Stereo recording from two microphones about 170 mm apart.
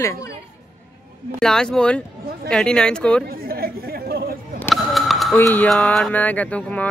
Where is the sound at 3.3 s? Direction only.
60° right (ahead or behind).